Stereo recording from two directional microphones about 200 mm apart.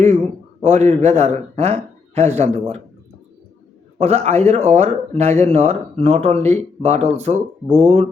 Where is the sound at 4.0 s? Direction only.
35° right (ahead or behind).